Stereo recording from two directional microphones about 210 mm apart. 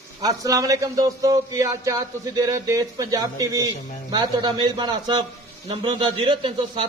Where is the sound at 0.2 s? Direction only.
15° right (ahead or behind).